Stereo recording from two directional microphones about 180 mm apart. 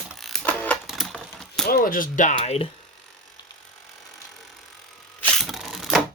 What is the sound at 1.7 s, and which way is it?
Speech, 55° left (ahead or behind).